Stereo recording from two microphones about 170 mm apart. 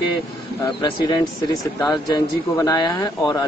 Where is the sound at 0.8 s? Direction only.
25° left (ahead or behind).